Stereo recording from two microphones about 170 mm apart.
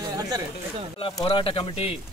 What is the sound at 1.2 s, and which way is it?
Speech, 30° left (ahead or behind).